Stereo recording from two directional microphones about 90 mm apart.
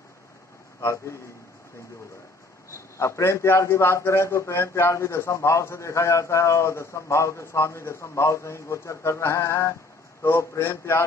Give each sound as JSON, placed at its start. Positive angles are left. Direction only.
{"t": 0.7, "sound": "a man's voice", "side_deg": 30}
{"t": 3.0, "sound": "a man's voice", "side_deg": 30}